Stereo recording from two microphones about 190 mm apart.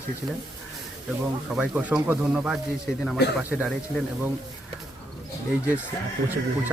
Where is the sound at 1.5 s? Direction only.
5° right (ahead or behind).